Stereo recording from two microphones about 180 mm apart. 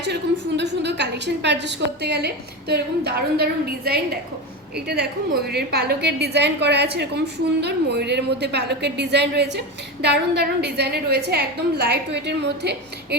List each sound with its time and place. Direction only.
0.0 s a woman's voice: 70° right (ahead or behind)